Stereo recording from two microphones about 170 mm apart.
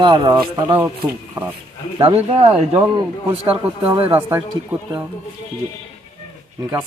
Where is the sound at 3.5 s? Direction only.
30° right (ahead or behind).